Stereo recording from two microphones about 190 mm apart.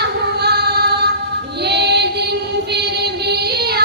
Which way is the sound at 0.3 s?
60° right (ahead or behind).